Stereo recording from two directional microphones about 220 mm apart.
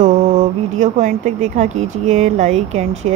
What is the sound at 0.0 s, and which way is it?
Speech, 35° right (ahead or behind).